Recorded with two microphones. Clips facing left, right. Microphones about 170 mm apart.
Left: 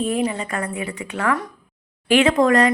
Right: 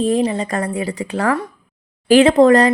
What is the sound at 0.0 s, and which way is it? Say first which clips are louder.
Speech: right 5 dB; 35° right (ahead or behind).